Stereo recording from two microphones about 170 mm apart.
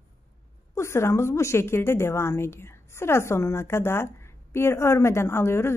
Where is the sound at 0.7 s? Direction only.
15° left (ahead or behind).